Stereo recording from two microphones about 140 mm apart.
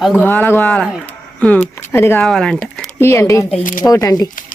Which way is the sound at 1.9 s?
15° left (ahead or behind).